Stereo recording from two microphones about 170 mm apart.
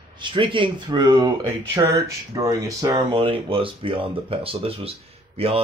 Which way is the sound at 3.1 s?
30° right (ahead or behind).